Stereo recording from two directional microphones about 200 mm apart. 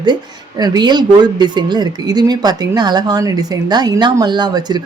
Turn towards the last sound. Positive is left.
turn(degrees=-20)  # may be behind; listen again after turning